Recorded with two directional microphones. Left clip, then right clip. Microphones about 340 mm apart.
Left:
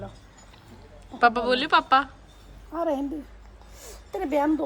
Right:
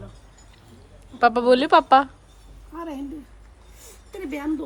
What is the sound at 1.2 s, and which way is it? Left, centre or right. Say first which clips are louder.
Speech: right 4 dB; centre.